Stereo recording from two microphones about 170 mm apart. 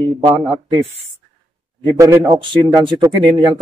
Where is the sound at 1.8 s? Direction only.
20° right (ahead or behind).